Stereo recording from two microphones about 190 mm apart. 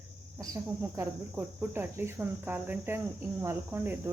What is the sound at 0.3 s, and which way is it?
Cricket, 10° right (ahead or behind).